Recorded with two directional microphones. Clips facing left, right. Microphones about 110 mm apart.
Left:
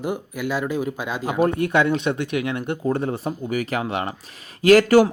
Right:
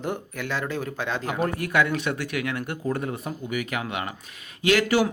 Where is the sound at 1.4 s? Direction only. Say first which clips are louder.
Left 5 dB; 25° left (ahead or behind).